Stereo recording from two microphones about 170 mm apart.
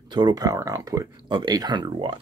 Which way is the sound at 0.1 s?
25° right (ahead or behind).